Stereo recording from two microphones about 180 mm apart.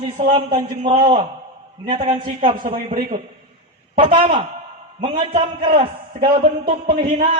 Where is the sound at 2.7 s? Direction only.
25° right (ahead or behind).